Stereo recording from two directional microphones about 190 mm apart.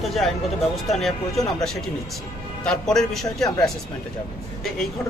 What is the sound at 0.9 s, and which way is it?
Speech, centre (ahead or behind).